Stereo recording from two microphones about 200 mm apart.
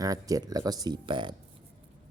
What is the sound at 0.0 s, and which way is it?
Speech, 15° right (ahead or behind).